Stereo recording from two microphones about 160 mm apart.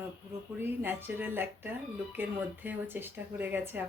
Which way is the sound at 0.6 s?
15° right (ahead or behind).